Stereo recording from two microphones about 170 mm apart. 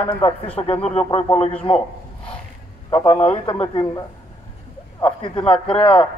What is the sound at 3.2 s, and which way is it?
Speech, 35° left (ahead or behind).